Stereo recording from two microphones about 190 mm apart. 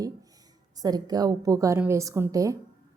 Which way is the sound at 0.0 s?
20° right (ahead or behind).